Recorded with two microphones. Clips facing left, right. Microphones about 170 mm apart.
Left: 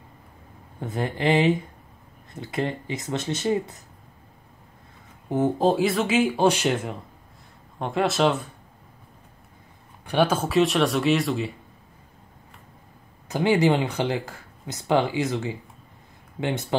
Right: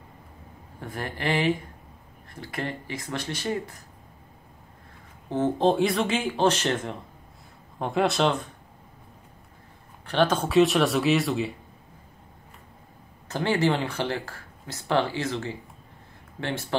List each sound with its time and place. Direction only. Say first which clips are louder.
0.7 s speech: left 6 dB; 20° left (ahead or behind)
5.3 s speech: left 1 dB; 10° left (ahead or behind)
10.0 s speech: left 1 dB; 10° left (ahead or behind)
13.3 s speech: left 4 dB; 15° left (ahead or behind)